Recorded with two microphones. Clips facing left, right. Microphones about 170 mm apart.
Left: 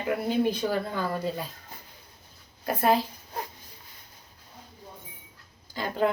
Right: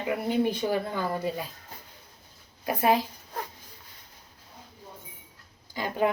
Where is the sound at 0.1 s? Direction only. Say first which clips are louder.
Left 1 dB; 15° right (ahead or behind).